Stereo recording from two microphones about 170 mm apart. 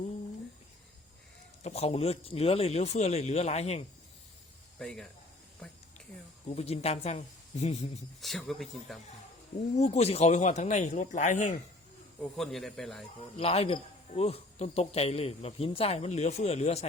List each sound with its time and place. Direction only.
1.6 s speech: 40° left (ahead or behind)
4.8 s speech: 5° left (ahead or behind)
6.5 s speech: 40° left (ahead or behind)
8.2 s speech: centre (ahead or behind)
9.7 s speech: 40° left (ahead or behind)
12.4 s speech: centre (ahead or behind)
13.3 s speech: 35° left (ahead or behind)